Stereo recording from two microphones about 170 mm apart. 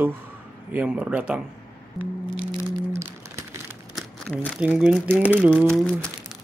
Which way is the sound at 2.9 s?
15° right (ahead or behind).